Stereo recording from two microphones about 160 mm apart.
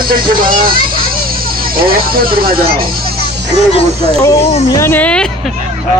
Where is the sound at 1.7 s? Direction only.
65° right (ahead or behind).